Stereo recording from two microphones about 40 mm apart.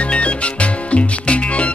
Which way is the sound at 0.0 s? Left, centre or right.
Left.